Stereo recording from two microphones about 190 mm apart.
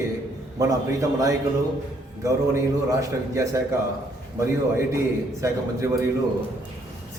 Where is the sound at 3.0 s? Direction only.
15° right (ahead or behind).